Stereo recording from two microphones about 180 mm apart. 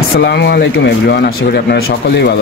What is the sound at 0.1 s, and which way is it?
Speech, 65° left (ahead or behind).